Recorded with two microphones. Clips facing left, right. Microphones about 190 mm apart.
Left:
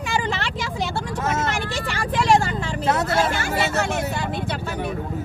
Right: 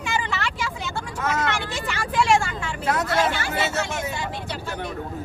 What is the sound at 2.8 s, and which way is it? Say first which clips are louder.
Speech: left 2 dB; 25° left (ahead or behind).